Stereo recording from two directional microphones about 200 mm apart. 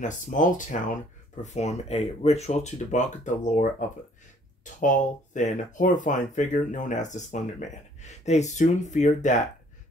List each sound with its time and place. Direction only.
0.0 s speech: 40° left (ahead or behind)
4.7 s speech: 40° left (ahead or behind)